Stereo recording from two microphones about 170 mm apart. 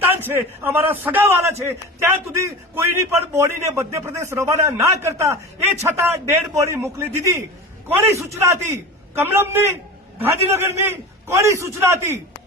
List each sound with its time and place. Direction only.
0.1 s a man's voice: 10° right (ahead or behind)